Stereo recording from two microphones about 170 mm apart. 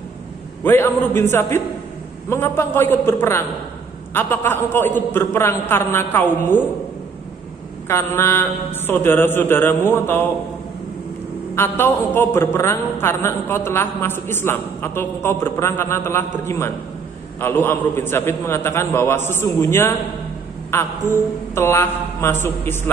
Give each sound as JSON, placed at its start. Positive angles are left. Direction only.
{"t": 0.7, "sound": "a man's voice", "side_deg": 15}
{"t": 7.9, "sound": "a man's voice", "side_deg": 15}
{"t": 11.5, "sound": "a man's voice", "side_deg": 15}